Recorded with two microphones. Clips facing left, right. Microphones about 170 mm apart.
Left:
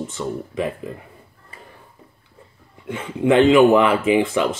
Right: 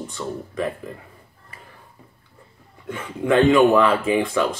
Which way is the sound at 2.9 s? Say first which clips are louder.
Left 3 dB; 20° left (ahead or behind).